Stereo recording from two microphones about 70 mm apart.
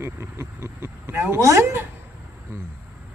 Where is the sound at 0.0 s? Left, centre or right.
Right.